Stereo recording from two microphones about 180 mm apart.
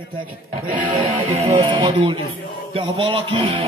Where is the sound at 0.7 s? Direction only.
45° right (ahead or behind).